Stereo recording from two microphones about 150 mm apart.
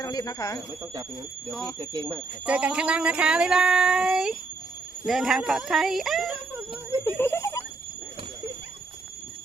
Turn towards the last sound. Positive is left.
turn(degrees=20)  # may be behind; listen again after turning